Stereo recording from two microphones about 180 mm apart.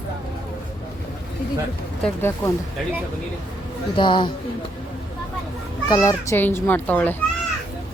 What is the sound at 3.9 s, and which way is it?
Speech, 25° left (ahead or behind).